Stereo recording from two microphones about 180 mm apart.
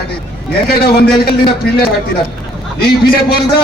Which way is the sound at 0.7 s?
60° left (ahead or behind).